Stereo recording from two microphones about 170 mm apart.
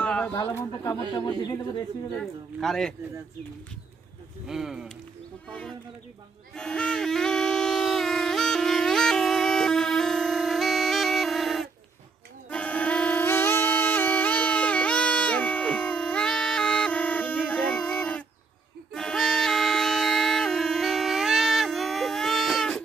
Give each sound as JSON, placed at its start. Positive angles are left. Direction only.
{"t": 0.0, "sound": "a sound", "side_deg": 5}
{"t": 0.4, "sound": "a man's voice", "side_deg": 20}
{"t": 2.1, "sound": "speech", "side_deg": 5}
{"t": 4.5, "sound": "speech", "side_deg": 0}
{"t": 6.5, "sound": "a sound", "side_deg": 5}
{"t": 12.4, "sound": "music", "side_deg": 10}